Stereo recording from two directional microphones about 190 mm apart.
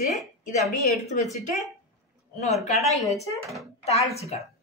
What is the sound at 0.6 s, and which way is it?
Speech, centre (ahead or behind).